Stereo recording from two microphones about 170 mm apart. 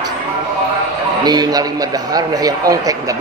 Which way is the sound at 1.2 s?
25° right (ahead or behind).